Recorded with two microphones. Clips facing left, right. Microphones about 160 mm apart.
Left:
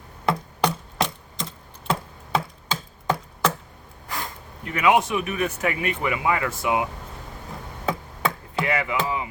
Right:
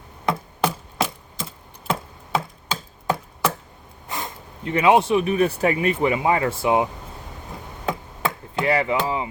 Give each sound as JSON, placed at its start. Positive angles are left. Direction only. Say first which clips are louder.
{"t": 0.3, "sound": "chopping", "louder": "even", "side_deg": -5}
{"t": 4.1, "sound": "speech", "louder": "right 1 dB", "side_deg": -25}
{"t": 8.6, "sound": "speech", "louder": "right 4 dB", "side_deg": -30}